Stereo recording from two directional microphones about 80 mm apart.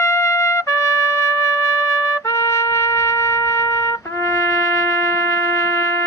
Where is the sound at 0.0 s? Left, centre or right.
Left.